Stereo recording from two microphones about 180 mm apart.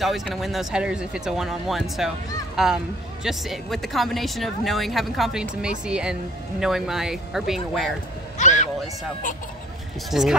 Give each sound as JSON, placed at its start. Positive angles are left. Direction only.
{"t": 0.0, "sound": "speech", "side_deg": 0}
{"t": 8.4, "sound": "a man's voice", "side_deg": 40}
{"t": 10.1, "sound": "speech", "side_deg": 0}